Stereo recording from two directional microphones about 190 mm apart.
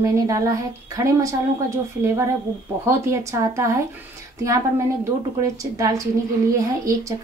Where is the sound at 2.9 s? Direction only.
15° right (ahead or behind).